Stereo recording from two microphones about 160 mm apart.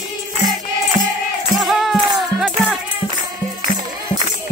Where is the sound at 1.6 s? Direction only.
Centre (ahead or behind).